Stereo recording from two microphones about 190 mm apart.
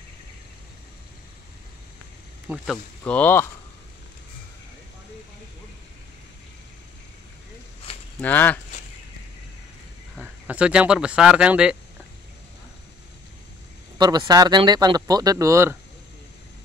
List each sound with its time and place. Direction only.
2.4 s speech: centre (ahead or behind)
3.0 s speech: 10° left (ahead or behind)
8.2 s speech: 10° left (ahead or behind)
10.1 s speech: 5° right (ahead or behind)
13.9 s speech: 20° right (ahead or behind)